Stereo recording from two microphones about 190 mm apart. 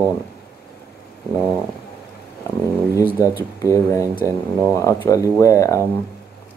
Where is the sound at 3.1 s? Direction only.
10° right (ahead or behind).